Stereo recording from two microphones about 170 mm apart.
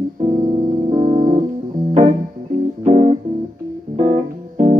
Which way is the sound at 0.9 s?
25° right (ahead or behind).